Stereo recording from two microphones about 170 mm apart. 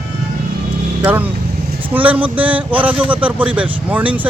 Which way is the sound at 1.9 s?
10° right (ahead or behind).